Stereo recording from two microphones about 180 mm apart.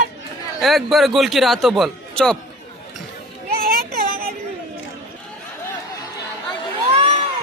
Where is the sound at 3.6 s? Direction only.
55° right (ahead or behind).